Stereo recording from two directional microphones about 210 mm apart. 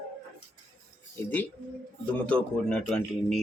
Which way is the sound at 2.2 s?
5° left (ahead or behind).